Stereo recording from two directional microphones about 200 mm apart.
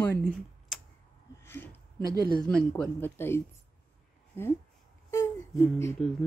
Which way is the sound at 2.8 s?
10° left (ahead or behind).